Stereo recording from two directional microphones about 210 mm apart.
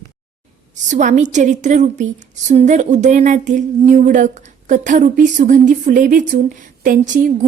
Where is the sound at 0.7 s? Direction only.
35° right (ahead or behind).